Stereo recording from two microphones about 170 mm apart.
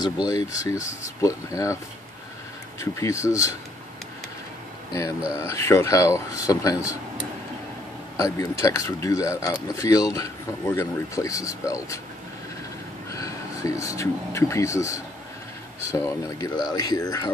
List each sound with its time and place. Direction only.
0.3 s speech: 20° left (ahead or behind)
2.8 s speech: 15° left (ahead or behind)
5.4 s speech: 15° left (ahead or behind)
8.2 s speech: 20° left (ahead or behind)
13.1 s speech: 20° left (ahead or behind)